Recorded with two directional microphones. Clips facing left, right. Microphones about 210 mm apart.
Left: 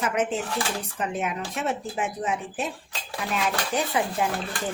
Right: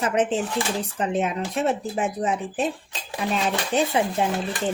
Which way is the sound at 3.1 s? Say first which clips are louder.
Right 3 dB; 25° right (ahead or behind).